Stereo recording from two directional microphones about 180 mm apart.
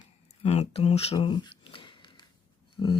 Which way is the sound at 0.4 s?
35° left (ahead or behind).